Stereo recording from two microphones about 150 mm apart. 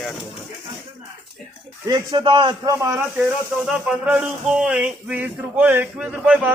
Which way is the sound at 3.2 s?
5° right (ahead or behind).